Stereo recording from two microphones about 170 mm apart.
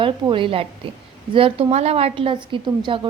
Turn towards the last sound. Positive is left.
turn(degrees=-25)  # may be behind; listen again after turning